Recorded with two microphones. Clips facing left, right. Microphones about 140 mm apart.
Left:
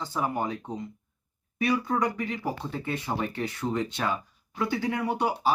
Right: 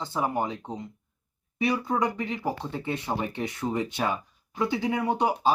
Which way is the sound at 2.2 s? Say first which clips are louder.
Right 1 dB; 20° right (ahead or behind).